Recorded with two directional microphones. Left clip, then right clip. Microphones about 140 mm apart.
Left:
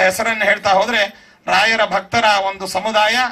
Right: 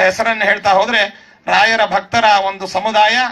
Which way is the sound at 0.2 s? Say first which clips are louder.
Right 2 dB; 15° left (ahead or behind).